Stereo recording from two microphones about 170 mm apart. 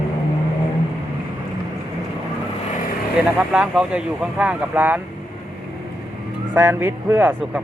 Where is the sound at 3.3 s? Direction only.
5° right (ahead or behind).